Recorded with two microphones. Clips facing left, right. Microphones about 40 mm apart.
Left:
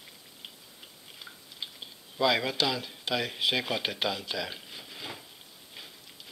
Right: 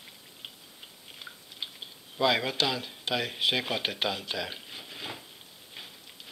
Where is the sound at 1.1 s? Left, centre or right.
Centre.